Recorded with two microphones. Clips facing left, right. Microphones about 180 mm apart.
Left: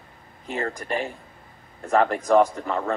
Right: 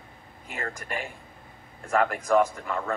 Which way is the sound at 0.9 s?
35° left (ahead or behind).